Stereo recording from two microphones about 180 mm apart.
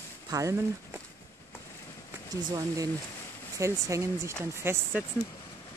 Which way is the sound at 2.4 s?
20° right (ahead or behind).